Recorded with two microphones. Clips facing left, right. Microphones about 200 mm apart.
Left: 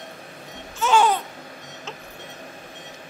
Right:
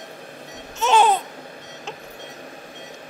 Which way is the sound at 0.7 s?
20° right (ahead or behind).